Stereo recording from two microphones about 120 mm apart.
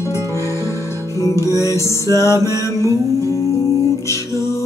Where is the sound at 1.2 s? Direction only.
25° left (ahead or behind).